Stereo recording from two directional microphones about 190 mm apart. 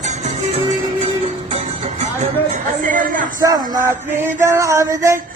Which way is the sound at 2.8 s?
45° right (ahead or behind).